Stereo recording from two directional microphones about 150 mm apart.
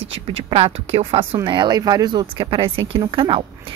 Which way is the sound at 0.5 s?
40° right (ahead or behind).